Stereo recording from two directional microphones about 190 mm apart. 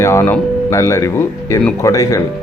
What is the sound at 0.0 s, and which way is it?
Speech, 15° left (ahead or behind).